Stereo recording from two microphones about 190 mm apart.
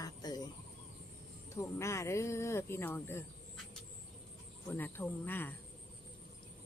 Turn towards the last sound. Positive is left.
turn(degrees=10)  # may be behind; listen again after turning